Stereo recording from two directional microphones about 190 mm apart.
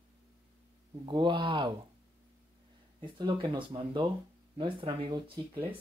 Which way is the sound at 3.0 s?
25° right (ahead or behind).